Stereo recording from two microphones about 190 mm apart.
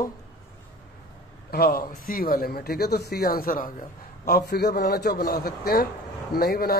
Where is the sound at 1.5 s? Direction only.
55° left (ahead or behind).